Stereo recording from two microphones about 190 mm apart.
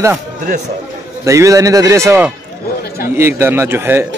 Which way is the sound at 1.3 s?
15° right (ahead or behind).